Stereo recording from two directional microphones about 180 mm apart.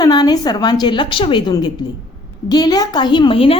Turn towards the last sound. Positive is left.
turn(degrees=30)  # may be behind; listen again after turning